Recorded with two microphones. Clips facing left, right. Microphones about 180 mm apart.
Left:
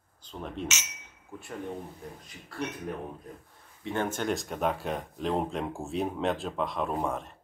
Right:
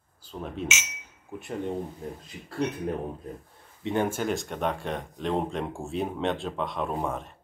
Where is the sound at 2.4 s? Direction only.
35° right (ahead or behind).